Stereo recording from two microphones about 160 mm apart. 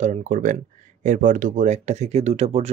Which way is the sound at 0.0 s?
50° right (ahead or behind).